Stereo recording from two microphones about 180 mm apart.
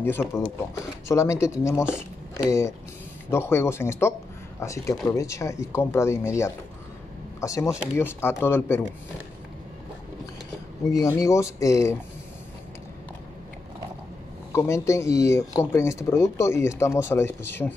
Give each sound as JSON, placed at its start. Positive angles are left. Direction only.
{"t": 0.0, "sound": "speech", "side_deg": 10}
{"t": 10.9, "sound": "speech", "side_deg": 20}
{"t": 14.5, "sound": "speech", "side_deg": 15}